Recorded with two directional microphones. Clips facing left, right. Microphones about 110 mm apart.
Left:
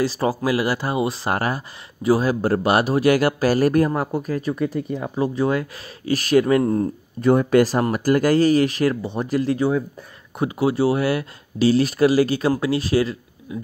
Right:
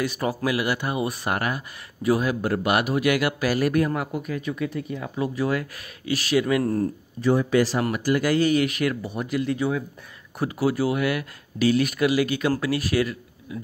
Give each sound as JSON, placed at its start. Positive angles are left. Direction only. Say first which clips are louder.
{"t": 0.0, "sound": "a man's voice", "louder": "left 4 dB", "side_deg": 30}
{"t": 6.0, "sound": "a man's voice", "louder": "left 5 dB", "side_deg": 40}
{"t": 6.6, "sound": "speech", "louder": "left 3 dB", "side_deg": 25}
{"t": 7.2, "sound": "a man's voice", "louder": "left 5 dB", "side_deg": 50}